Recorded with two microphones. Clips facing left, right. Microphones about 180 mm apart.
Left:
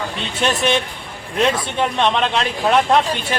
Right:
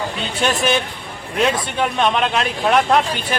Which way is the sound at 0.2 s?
Centre (ahead or behind).